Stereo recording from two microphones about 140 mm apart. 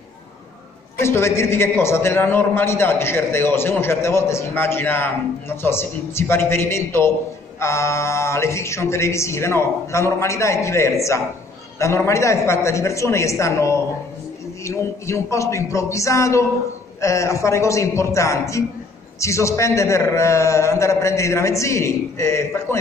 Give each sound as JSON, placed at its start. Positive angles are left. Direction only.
{"t": 1.0, "sound": "a man's voice", "side_deg": 20}